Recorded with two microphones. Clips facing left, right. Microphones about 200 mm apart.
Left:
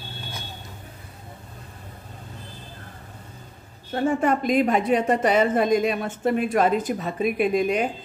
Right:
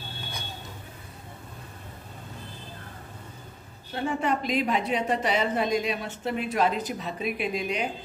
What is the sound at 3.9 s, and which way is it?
A woman's voice, 45° left (ahead or behind).